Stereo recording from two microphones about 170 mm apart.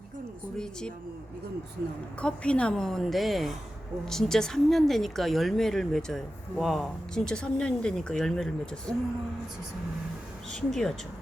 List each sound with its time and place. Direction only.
0.5 s speech: 5° left (ahead or behind)
2.2 s speech: 5° left (ahead or behind)
10.7 s speech: centre (ahead or behind)